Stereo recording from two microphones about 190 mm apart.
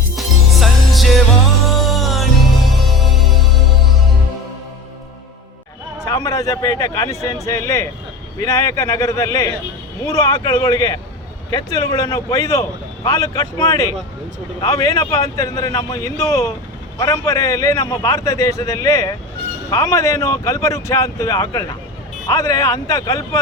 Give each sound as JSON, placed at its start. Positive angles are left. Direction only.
{"t": 0.2, "sound": "music", "side_deg": 0}
{"t": 6.1, "sound": "a man's voice", "side_deg": 20}